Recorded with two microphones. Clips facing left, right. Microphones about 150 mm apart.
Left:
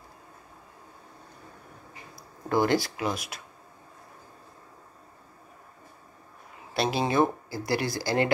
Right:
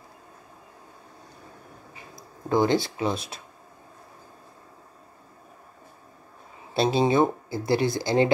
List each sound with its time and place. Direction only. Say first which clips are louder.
2.5 s speech: right 2 dB; 20° right (ahead or behind)
6.7 s speech: right 5 dB; 25° right (ahead or behind)